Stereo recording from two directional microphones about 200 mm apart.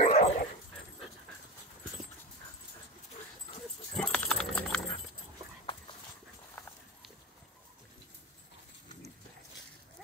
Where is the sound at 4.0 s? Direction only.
5° left (ahead or behind).